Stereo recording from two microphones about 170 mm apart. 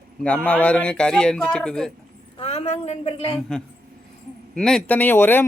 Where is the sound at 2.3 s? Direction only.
35° left (ahead or behind).